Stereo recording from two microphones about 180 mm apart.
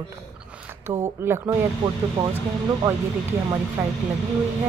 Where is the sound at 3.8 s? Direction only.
10° right (ahead or behind).